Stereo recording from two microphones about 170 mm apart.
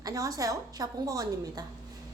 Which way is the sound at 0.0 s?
20° right (ahead or behind).